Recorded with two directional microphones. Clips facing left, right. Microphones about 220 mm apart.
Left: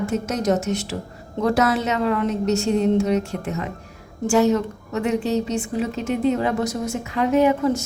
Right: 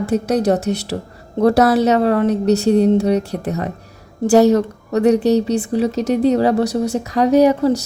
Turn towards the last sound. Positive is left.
turn(degrees=-40)  # may be behind; listen again after turning